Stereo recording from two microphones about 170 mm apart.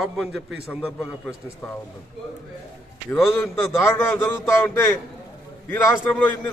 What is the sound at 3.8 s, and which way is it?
A man's voice, 15° left (ahead or behind).